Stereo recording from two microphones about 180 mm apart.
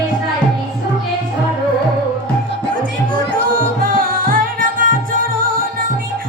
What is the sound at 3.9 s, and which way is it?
Music, 50° right (ahead or behind).